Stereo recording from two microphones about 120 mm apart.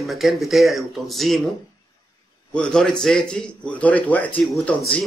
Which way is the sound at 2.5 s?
5° left (ahead or behind).